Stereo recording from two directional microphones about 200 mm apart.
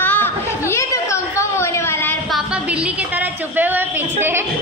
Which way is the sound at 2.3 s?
5° right (ahead or behind).